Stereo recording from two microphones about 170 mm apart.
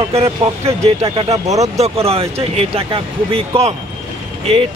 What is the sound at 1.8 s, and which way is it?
Speech, 35° right (ahead or behind).